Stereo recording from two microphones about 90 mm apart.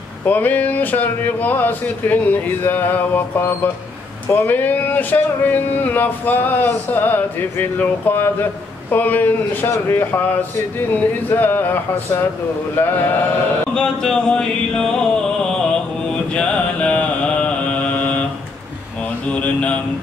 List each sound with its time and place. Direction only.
0.2 s speech: 20° left (ahead or behind)
13.7 s chant: 10° left (ahead or behind)
19.2 s mantra: 15° left (ahead or behind)